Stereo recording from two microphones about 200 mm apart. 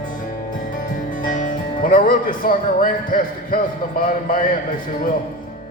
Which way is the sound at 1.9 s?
45° left (ahead or behind).